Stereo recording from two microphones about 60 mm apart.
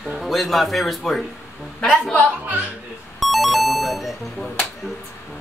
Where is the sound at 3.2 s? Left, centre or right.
Centre.